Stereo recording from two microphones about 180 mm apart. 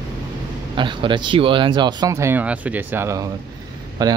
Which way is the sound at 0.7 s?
25° right (ahead or behind).